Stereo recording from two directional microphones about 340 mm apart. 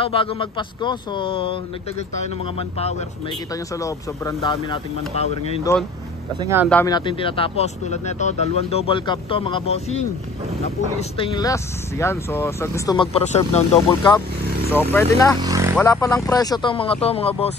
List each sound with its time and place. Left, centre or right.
0.0 s speech: centre
3.8 s speech: centre
6.4 s speech: centre
6.7 s speech: centre
15.4 s speech: centre
15.8 s speech: centre